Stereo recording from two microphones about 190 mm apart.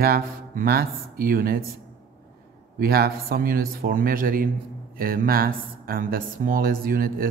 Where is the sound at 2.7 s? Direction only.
55° right (ahead or behind).